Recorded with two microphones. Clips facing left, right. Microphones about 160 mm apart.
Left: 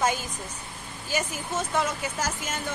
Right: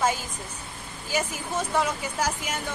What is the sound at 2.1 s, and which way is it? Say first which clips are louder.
Speech: right 3 dB; 10° right (ahead or behind).